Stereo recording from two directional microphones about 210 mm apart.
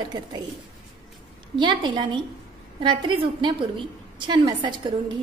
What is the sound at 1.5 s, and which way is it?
A woman's voice, 20° right (ahead or behind).